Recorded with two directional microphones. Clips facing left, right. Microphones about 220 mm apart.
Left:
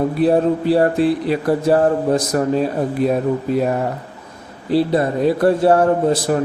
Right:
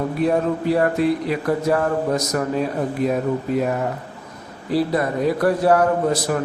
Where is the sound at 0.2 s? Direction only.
30° left (ahead or behind).